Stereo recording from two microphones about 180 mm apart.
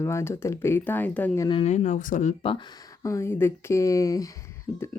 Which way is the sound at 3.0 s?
15° left (ahead or behind).